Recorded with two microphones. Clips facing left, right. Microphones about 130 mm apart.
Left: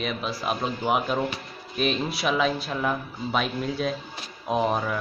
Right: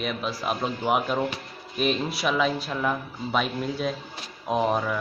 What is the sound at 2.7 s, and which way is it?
Speech, 10° left (ahead or behind).